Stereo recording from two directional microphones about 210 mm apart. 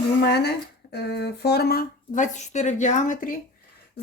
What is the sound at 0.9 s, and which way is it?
Speech, 50° left (ahead or behind).